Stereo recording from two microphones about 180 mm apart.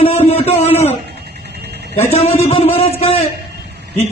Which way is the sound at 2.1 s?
35° left (ahead or behind).